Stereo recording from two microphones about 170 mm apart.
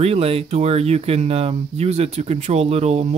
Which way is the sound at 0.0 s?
35° right (ahead or behind).